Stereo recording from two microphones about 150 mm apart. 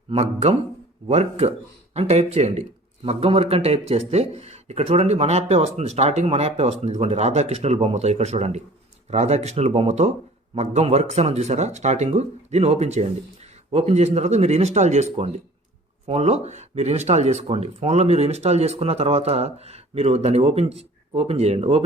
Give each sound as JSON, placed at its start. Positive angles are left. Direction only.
{"t": 0.1, "sound": "speech", "side_deg": -50}